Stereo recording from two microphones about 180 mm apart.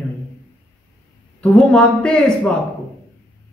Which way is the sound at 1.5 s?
5° left (ahead or behind).